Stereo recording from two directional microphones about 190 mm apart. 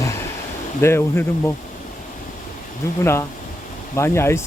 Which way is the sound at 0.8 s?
10° left (ahead or behind).